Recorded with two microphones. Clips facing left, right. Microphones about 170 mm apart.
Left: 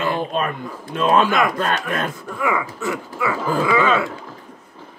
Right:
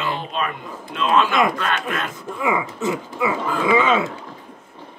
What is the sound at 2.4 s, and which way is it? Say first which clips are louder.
Speech: right 1 dB; 20° right (ahead or behind).